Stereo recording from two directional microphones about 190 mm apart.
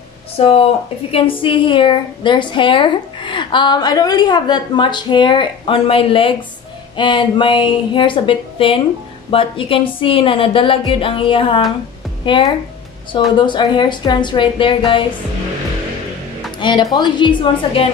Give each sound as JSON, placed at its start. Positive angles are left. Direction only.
{"t": 0.4, "sound": "a woman's voice", "side_deg": 30}
{"t": 16.5, "sound": "music", "side_deg": 25}
{"t": 16.9, "sound": "a woman's voice", "side_deg": 25}